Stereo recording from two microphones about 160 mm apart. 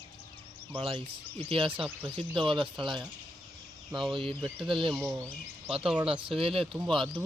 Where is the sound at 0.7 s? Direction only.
30° right (ahead or behind).